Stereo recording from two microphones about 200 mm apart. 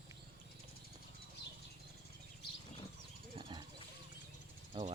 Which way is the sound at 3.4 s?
25° right (ahead or behind).